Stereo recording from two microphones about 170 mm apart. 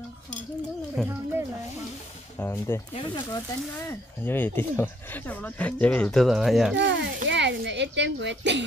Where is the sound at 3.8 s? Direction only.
10° left (ahead or behind).